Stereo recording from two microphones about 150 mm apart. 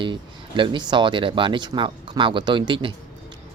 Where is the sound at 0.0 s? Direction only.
35° right (ahead or behind).